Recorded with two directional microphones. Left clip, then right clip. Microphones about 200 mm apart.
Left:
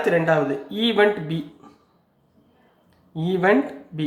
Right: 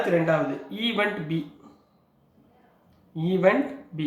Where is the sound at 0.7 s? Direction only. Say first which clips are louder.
Left 8 dB; 45° left (ahead or behind).